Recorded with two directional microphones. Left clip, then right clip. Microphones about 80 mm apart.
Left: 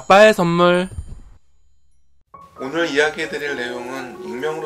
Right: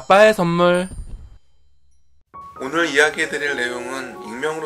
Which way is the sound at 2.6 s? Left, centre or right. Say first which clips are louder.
Right 2 dB; right.